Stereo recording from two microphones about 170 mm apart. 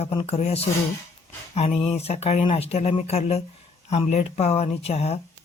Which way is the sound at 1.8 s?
40° left (ahead or behind).